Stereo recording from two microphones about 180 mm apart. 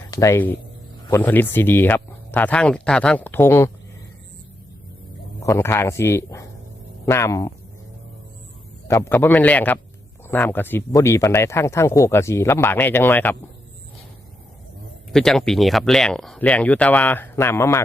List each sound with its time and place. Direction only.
0.1 s speech: 15° left (ahead or behind)
5.4 s speech: 15° left (ahead or behind)
8.9 s speech: 15° left (ahead or behind)
15.1 s speech: centre (ahead or behind)